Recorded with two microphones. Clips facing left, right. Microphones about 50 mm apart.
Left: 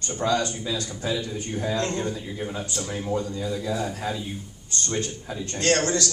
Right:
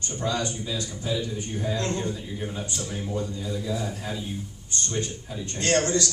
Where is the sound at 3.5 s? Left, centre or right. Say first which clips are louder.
Left 2 dB; left.